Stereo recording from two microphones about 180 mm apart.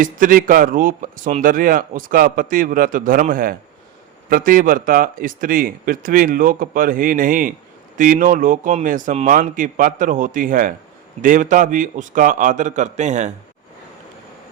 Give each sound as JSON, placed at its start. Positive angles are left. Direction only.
{"t": 0.0, "sound": "speech", "side_deg": -50}